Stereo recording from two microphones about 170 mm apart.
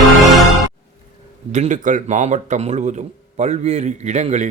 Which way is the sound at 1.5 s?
45° right (ahead or behind).